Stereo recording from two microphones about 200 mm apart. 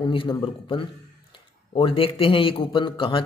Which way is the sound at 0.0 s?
25° left (ahead or behind).